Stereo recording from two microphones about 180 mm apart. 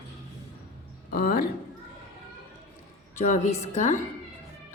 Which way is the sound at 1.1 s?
55° left (ahead or behind).